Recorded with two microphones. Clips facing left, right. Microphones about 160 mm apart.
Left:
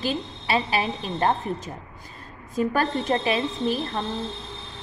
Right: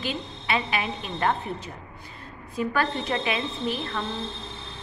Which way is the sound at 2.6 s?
40° left (ahead or behind).